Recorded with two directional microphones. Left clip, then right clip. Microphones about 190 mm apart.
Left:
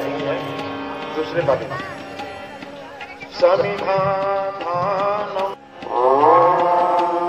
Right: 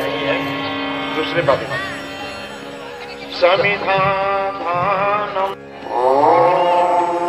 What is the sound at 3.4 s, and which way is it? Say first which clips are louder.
Music: right 2 dB; 35° left (ahead or behind).